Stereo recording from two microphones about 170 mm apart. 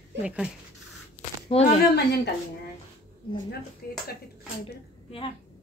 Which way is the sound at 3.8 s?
65° left (ahead or behind).